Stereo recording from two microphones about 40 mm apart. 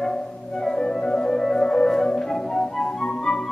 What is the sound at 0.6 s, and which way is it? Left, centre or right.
Music, centre.